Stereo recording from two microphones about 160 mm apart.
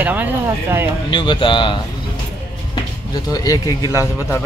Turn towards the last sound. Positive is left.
turn(degrees=20)  # may be behind; listen again after turning